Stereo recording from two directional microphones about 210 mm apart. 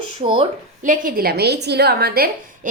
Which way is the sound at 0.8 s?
40° right (ahead or behind).